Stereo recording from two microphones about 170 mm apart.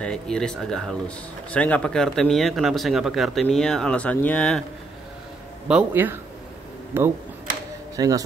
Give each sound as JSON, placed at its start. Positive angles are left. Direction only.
{"t": 0.0, "sound": "speech", "side_deg": 5}
{"t": 5.7, "sound": "speech", "side_deg": -10}